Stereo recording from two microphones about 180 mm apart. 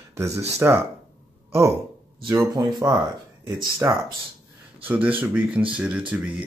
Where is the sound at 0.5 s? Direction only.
15° right (ahead or behind).